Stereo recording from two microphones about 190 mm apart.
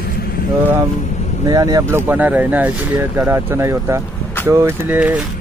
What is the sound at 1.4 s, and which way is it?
Speech, 20° right (ahead or behind).